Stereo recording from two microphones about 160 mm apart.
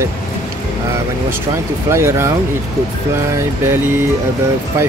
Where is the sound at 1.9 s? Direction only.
15° right (ahead or behind).